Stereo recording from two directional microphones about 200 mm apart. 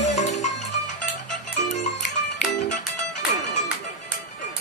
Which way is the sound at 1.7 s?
40° left (ahead or behind).